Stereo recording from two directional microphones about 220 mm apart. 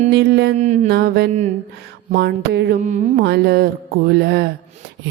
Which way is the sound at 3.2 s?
45° right (ahead or behind).